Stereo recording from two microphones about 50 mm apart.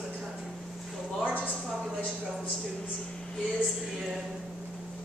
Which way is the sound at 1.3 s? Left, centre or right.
Right.